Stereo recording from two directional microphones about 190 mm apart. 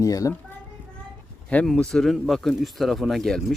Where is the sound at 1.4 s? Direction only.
5° left (ahead or behind).